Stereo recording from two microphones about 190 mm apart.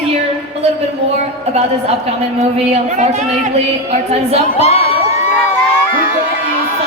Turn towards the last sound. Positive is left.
turn(degrees=35)  # may be behind; listen again after turning